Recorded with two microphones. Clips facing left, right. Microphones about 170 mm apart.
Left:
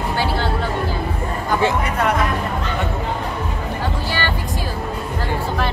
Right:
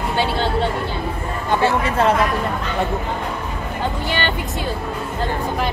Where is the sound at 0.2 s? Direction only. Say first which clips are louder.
Right 3 dB; 25° right (ahead or behind).